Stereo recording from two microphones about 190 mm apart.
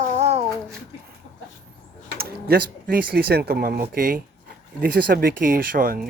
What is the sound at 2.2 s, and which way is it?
Speech, 55° right (ahead or behind).